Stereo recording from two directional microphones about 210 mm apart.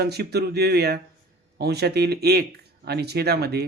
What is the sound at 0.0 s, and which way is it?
Speech, 50° right (ahead or behind).